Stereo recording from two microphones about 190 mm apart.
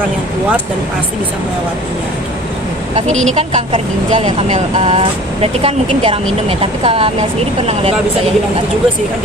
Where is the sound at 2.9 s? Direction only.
35° right (ahead or behind).